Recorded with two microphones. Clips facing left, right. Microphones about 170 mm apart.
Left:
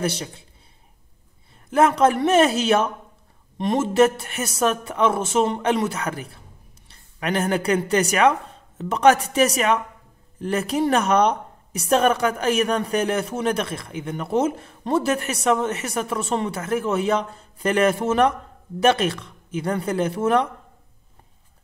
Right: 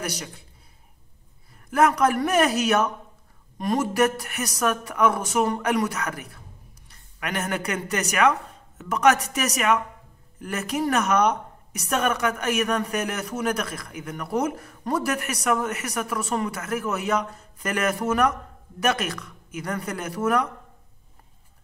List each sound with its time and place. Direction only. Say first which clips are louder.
0.0 s speech: left 6 dB; 25° left (ahead or behind)
1.7 s speech: left 3 dB; 25° left (ahead or behind)